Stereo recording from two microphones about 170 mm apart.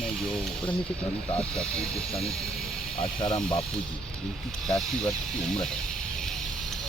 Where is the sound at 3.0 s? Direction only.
35° left (ahead or behind).